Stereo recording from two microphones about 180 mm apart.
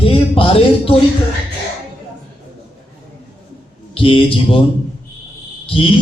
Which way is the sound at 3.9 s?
30° left (ahead or behind).